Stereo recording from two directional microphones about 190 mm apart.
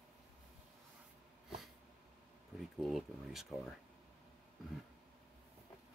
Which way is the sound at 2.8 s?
Centre (ahead or behind).